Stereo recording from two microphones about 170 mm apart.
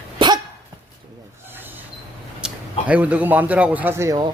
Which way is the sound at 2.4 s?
10° right (ahead or behind).